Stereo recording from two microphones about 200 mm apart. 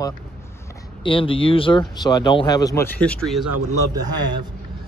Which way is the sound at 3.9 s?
20° right (ahead or behind).